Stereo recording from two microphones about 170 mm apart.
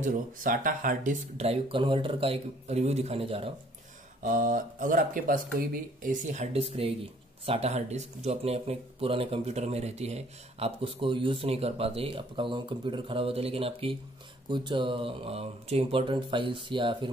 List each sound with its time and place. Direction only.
0.0 s speech: 50° right (ahead or behind); by 3.5 s 35° right (ahead or behind)
4.2 s speech: 50° right (ahead or behind); by 17.1 s 30° right (ahead or behind)